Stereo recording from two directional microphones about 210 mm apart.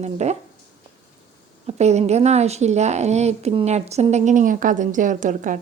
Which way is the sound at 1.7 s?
30° right (ahead or behind).